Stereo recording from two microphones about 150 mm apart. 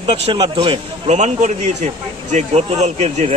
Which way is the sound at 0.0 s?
40° right (ahead or behind).